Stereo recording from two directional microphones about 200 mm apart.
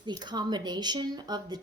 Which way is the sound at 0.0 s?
20° right (ahead or behind).